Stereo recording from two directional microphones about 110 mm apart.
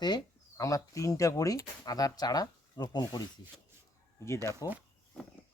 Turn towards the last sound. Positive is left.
turn(degrees=30)  # may be behind; listen again after turning